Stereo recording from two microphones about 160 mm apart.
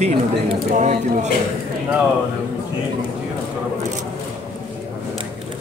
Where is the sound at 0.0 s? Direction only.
45° right (ahead or behind).